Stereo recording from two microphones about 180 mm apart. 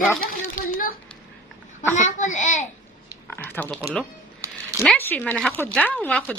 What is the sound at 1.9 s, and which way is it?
Speech, 40° left (ahead or behind).